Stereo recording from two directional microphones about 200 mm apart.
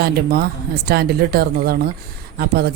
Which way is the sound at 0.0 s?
50° right (ahead or behind).